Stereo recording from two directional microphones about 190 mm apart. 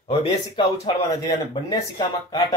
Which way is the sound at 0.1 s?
20° left (ahead or behind).